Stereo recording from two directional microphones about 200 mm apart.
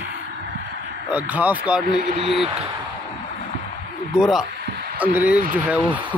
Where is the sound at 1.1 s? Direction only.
10° right (ahead or behind).